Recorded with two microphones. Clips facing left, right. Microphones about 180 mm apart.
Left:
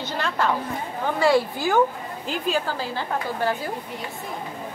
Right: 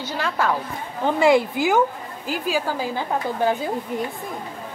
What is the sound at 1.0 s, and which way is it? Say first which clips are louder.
Speech: right 3 dB; 20° right (ahead or behind).